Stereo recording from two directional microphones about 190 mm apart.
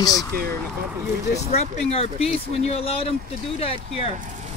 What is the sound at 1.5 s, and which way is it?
Speech, 35° left (ahead or behind).